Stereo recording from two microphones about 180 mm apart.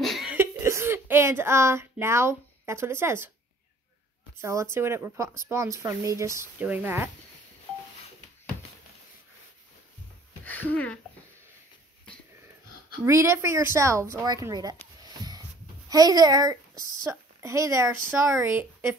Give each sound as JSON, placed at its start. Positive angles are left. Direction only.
{"t": 0.0, "sound": "cough", "side_deg": 0}
{"t": 0.4, "sound": "speech", "side_deg": -15}
{"t": 4.4, "sound": "speech", "side_deg": -15}
{"t": 10.4, "sound": "speech", "side_deg": 10}
{"t": 13.0, "sound": "a woman's voice", "side_deg": -15}
{"t": 15.0, "sound": "a sound", "side_deg": -20}
{"t": 15.9, "sound": "a woman's voice", "side_deg": -20}